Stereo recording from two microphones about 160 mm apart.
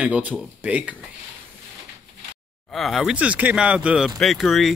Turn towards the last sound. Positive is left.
turn(degrees=0)  # may be behind; listen again after turning